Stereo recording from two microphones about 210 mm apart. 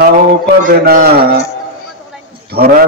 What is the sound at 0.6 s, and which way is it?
Speech, 40° right (ahead or behind).